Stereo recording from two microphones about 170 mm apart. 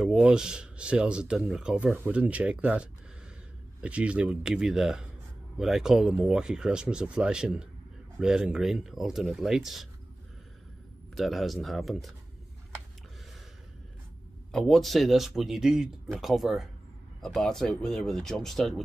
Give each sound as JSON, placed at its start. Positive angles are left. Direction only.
{"t": 0.0, "sound": "speech", "side_deg": -5}
{"t": 11.1, "sound": "speech", "side_deg": 0}
{"t": 14.5, "sound": "speech", "side_deg": 0}